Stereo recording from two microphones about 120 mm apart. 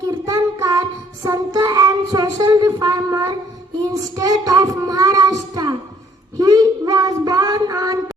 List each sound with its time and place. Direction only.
0.3 s child singing: 30° right (ahead or behind)